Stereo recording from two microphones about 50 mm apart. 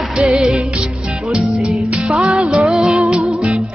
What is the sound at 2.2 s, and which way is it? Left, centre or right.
Music, centre.